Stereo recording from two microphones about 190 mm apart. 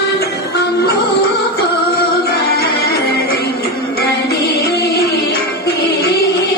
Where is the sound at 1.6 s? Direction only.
55° left (ahead or behind).